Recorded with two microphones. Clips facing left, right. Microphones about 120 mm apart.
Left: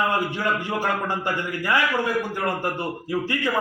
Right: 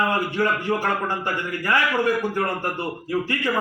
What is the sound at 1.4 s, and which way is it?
A man's voice, 15° left (ahead or behind).